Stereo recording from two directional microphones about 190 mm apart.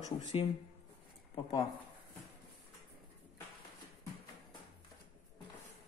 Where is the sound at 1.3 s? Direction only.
20° left (ahead or behind).